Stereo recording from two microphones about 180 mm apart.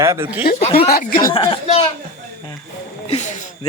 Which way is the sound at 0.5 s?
35° left (ahead or behind).